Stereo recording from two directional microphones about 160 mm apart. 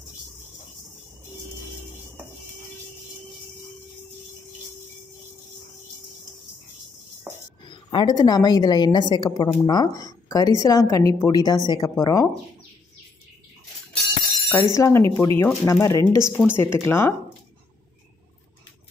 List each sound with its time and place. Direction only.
7.6 s a woman's voice: 30° left (ahead or behind)
14.5 s speech: 15° left (ahead or behind)